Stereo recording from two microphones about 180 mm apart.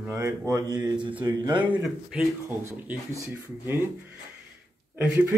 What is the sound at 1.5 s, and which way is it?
Speech, 10° right (ahead or behind).